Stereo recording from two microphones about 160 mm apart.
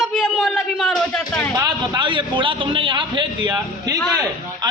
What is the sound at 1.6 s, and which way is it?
A man's voice, 30° right (ahead or behind).